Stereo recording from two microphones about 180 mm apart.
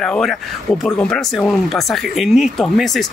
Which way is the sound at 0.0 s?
Centre (ahead or behind).